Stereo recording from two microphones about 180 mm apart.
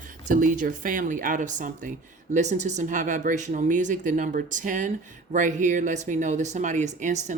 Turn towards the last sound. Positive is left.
turn(degrees=-40)  # may be behind; listen again after turning